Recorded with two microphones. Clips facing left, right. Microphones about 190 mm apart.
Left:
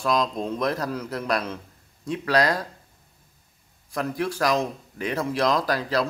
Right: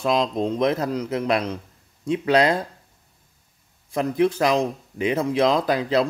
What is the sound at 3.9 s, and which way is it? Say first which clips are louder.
Speech: right 7 dB; 20° right (ahead or behind).